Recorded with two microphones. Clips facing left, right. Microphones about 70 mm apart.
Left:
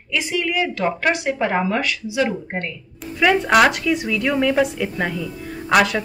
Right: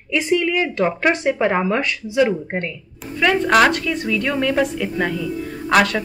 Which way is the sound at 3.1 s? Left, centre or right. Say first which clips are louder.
Even; centre.